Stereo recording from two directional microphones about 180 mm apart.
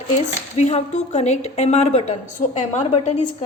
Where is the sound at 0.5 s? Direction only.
40° left (ahead or behind).